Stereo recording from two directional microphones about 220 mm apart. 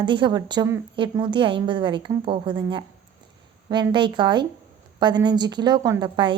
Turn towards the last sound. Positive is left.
turn(degrees=-20)  # may be behind; listen again after turning